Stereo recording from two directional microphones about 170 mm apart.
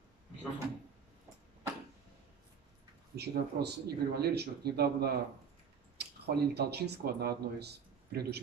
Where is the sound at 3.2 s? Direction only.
75° right (ahead or behind).